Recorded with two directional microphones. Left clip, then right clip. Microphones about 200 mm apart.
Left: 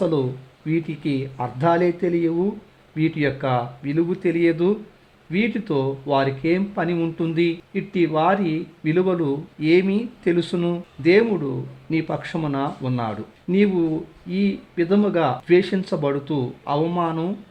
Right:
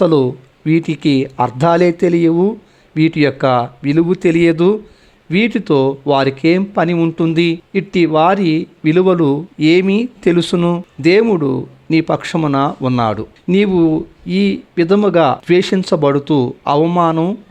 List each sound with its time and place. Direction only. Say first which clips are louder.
0.0 s speech: right 10 dB; 35° right (ahead or behind)